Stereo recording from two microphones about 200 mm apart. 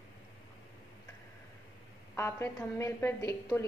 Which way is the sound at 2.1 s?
15° left (ahead or behind).